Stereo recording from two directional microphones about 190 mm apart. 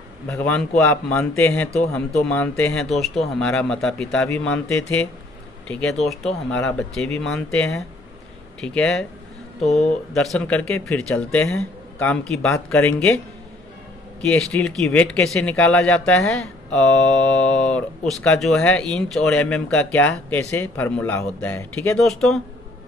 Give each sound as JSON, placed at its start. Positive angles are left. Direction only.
{"t": 0.3, "sound": "a man's voice", "side_deg": 10}
{"t": 9.6, "sound": "speech", "side_deg": 35}
{"t": 10.1, "sound": "speech", "side_deg": 5}
{"t": 14.3, "sound": "speech", "side_deg": 5}
{"t": 17.4, "sound": "speech", "side_deg": 5}